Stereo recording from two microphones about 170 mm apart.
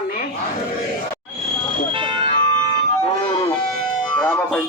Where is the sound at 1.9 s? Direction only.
30° right (ahead or behind).